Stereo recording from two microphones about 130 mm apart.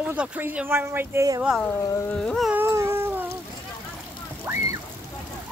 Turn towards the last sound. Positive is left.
turn(degrees=-15)  # may be behind; listen again after turning